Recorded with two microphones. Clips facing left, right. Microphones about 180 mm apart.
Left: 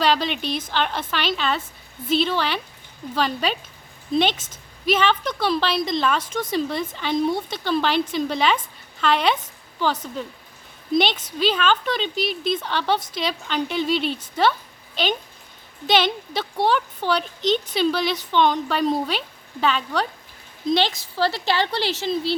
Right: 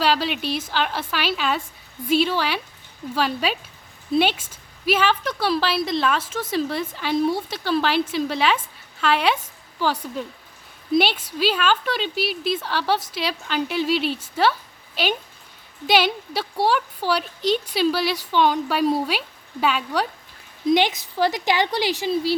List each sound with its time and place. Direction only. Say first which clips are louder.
0.0 s a woman's voice: even; 5° right (ahead or behind)